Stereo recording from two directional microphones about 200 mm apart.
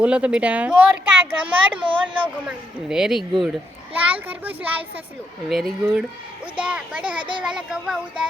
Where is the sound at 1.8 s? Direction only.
25° right (ahead or behind).